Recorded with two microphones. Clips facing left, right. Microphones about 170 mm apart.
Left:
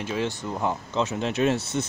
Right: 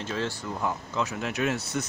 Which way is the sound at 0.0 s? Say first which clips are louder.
Left 3 dB; 15° left (ahead or behind).